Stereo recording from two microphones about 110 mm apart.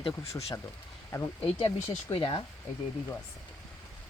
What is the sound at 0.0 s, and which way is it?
Speech, 70° left (ahead or behind).